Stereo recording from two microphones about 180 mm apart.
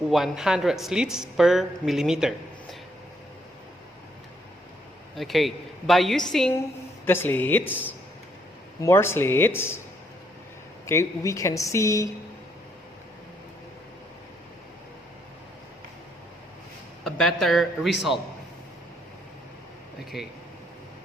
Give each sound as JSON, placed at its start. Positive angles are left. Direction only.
{"t": 0.1, "sound": "speech", "side_deg": 0}
{"t": 5.1, "sound": "speech", "side_deg": 0}
{"t": 8.8, "sound": "speech", "side_deg": 15}
{"t": 10.8, "sound": "speech", "side_deg": 15}
{"t": 17.0, "sound": "speech", "side_deg": 0}
{"t": 20.1, "sound": "speech", "side_deg": -5}